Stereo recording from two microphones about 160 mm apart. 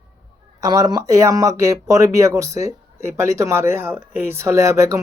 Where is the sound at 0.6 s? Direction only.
25° right (ahead or behind).